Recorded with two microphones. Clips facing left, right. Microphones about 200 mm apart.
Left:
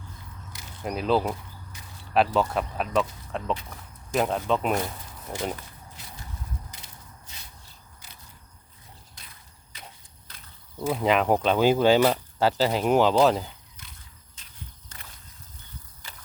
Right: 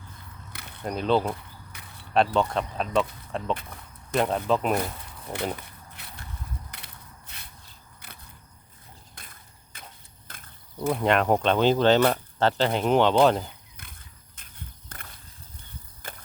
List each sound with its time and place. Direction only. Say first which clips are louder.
0.5 s mechanisms: right 1 dB; 60° right (ahead or behind)
0.8 s speech: even; 5° left (ahead or behind)
1.7 s a sound: even; 60° right (ahead or behind)
2.1 s speech: even; 5° left (ahead or behind)
6.0 s a sound: left 1 dB; 60° right (ahead or behind)
6.7 s crushing: right 1 dB; 60° right (ahead or behind)
8.0 s single-lens reflex camera: right 4 dB; 60° right (ahead or behind)
9.1 s a sound: right 2 dB; 50° right (ahead or behind)
10.2 s horse: right 3 dB; 50° right (ahead or behind)
10.8 s speech: even; centre (ahead or behind)
14.4 s horse: right 2 dB; 55° right (ahead or behind)
14.9 s a sound: right 3 dB; 55° right (ahead or behind)
16.0 s horse: right 8 dB; 55° right (ahead or behind)